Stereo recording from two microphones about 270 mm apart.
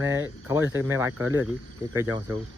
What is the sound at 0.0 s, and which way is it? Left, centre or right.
Speech, centre.